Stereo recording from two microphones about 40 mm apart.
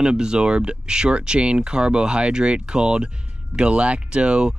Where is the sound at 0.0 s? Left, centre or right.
Centre.